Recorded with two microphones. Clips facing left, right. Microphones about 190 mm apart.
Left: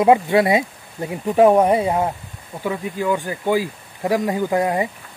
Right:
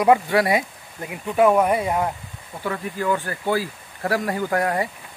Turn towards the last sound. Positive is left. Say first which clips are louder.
# left 3 dB
turn(degrees=20)  # may be behind; listen again after turning